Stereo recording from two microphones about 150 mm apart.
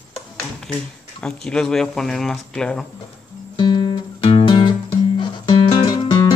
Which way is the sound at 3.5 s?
30° left (ahead or behind).